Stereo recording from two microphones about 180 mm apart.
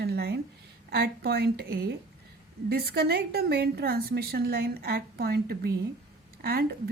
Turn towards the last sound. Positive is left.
turn(degrees=-60)  # may be behind; listen again after turning